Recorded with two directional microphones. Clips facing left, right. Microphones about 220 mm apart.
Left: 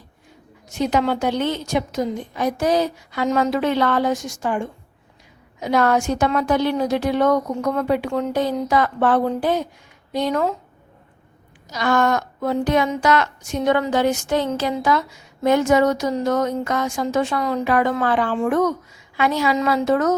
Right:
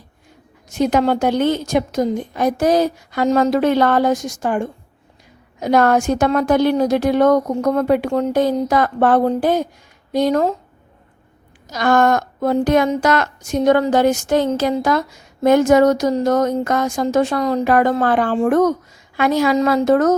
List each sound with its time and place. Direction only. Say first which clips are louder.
0.8 s a woman's voice: right 4 dB; 50° right (ahead or behind)
11.7 s a woman's voice: right 4 dB; 45° right (ahead or behind)